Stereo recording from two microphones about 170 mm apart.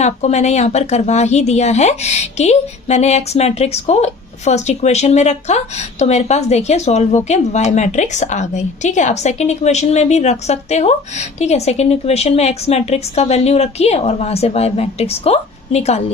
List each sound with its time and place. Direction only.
0.0 s a woman's voice: 40° left (ahead or behind)